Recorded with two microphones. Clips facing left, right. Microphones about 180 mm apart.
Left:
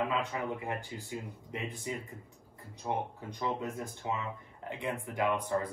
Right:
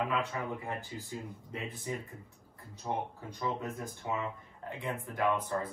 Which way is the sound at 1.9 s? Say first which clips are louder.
Even; 15° left (ahead or behind).